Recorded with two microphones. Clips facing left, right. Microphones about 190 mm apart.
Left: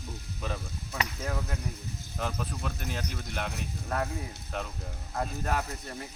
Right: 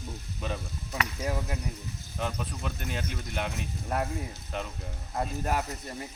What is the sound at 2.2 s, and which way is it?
Speech, centre (ahead or behind).